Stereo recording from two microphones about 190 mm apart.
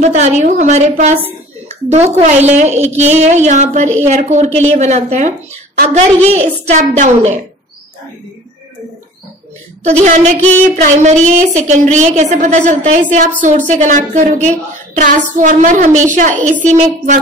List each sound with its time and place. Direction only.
0.0 s a woman's voice: 35° right (ahead or behind)
9.8 s a woman's voice: 35° right (ahead or behind)
15.0 s music: 45° right (ahead or behind)
16.0 s a woman's voice: 40° right (ahead or behind)